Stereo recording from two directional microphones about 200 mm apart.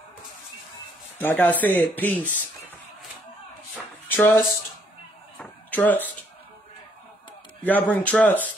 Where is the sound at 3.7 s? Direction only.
10° left (ahead or behind).